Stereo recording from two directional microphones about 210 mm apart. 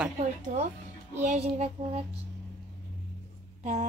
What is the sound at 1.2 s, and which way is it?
Child singing, 30° right (ahead or behind).